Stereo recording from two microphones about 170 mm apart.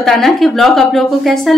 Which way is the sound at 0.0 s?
Centre (ahead or behind).